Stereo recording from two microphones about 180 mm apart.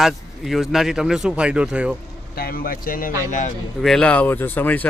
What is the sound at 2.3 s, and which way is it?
Speech, 55° left (ahead or behind).